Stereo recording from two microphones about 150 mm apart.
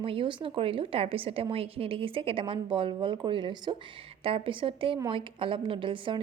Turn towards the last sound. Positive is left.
turn(degrees=-35)  # may be behind; listen again after turning